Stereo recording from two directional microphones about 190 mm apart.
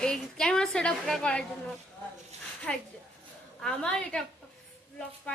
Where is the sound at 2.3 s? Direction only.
35° right (ahead or behind).